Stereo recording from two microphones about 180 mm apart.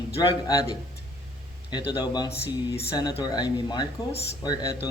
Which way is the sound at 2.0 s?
20° left (ahead or behind).